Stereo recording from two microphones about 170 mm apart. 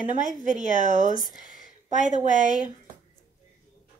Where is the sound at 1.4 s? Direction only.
50° left (ahead or behind).